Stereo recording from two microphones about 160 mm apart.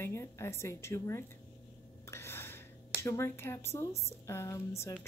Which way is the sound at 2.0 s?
15° left (ahead or behind).